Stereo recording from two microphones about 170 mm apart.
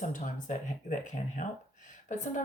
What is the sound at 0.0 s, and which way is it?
Speech, 50° left (ahead or behind).